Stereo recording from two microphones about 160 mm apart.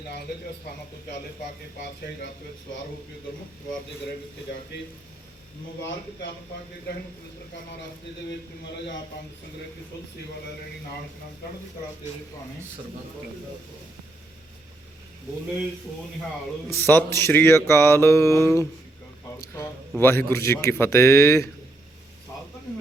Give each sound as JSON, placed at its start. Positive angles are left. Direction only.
{"t": 16.8, "sound": "speech", "side_deg": 15}
{"t": 20.0, "sound": "speech", "side_deg": 15}